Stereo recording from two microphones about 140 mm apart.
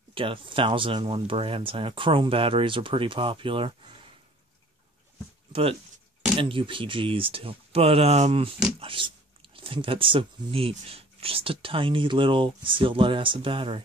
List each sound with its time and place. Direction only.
0.1 s speech: 40° right (ahead or behind)
5.5 s speech: 45° right (ahead or behind)
8.7 s speech: 40° right (ahead or behind)